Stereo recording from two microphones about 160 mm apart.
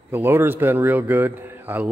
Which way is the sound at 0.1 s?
15° right (ahead or behind).